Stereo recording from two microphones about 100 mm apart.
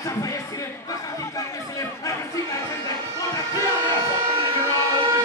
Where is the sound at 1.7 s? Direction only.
35° left (ahead or behind).